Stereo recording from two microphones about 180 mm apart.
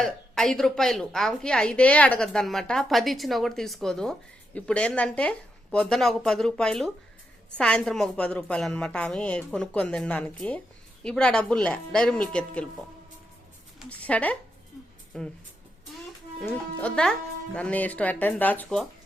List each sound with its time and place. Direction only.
0.0 s a woman's voice: 5° left (ahead or behind)
13.7 s a woman's voice: 10° left (ahead or behind)